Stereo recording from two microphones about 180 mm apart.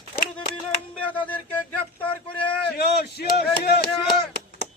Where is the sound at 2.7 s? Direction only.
65° left (ahead or behind).